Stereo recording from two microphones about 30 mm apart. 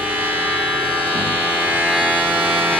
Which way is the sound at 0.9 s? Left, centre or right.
Right.